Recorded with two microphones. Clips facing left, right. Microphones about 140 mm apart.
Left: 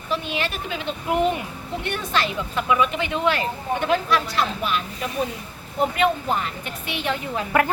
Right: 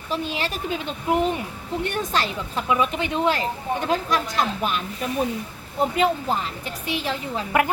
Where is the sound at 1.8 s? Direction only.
40° right (ahead or behind).